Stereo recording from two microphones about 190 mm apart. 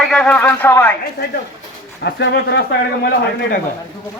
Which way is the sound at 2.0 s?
65° left (ahead or behind).